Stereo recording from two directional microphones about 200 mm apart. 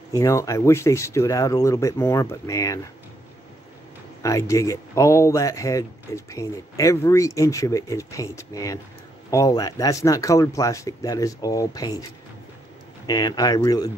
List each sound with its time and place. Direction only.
0.1 s speech: 15° left (ahead or behind)
4.2 s speech: 15° left (ahead or behind)
13.0 s speech: 20° left (ahead or behind)